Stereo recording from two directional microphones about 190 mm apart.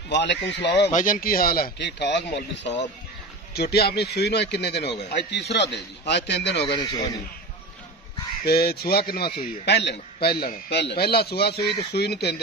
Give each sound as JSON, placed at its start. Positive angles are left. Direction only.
{"t": 0.1, "sound": "a man's voice", "side_deg": 65}
{"t": 0.8, "sound": "a man's voice", "side_deg": 40}
{"t": 6.8, "sound": "speech", "side_deg": 20}
{"t": 8.5, "sound": "a man's voice", "side_deg": 55}